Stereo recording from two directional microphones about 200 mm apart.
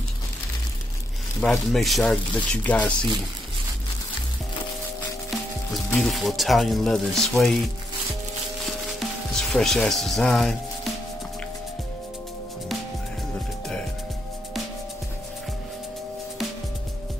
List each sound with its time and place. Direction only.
1.4 s speech: 5° left (ahead or behind)
5.7 s speech: centre (ahead or behind)
8.6 s music: centre (ahead or behind)